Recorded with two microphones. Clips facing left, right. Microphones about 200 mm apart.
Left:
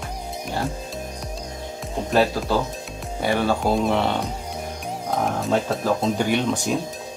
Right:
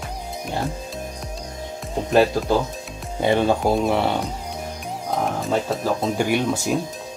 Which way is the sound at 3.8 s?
10° right (ahead or behind).